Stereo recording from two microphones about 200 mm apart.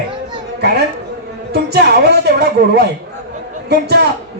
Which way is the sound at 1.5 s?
55° right (ahead or behind).